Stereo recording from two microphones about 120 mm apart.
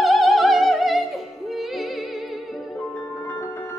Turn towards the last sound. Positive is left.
turn(degrees=20)  # may be behind; listen again after turning